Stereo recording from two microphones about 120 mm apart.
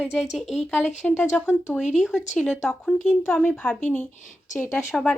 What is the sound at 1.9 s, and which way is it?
Speech, 5° right (ahead or behind).